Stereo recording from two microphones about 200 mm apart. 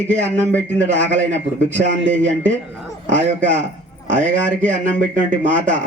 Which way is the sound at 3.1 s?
40° right (ahead or behind).